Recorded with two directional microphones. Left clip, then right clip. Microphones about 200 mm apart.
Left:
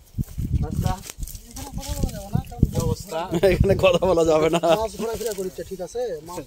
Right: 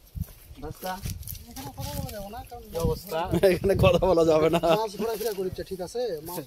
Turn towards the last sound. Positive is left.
turn(degrees=-35)  # may be behind; listen again after turning